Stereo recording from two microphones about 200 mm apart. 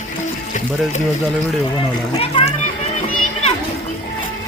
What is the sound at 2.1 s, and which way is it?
Speech, 30° left (ahead or behind).